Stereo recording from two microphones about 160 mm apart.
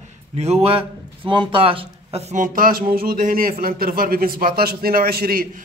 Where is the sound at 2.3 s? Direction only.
60° right (ahead or behind).